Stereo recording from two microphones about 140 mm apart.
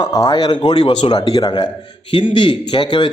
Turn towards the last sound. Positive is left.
turn(degrees=35)  # may be behind; listen again after turning